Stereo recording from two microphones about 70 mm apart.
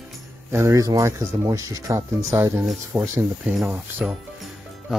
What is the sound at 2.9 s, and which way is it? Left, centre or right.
Speech, right.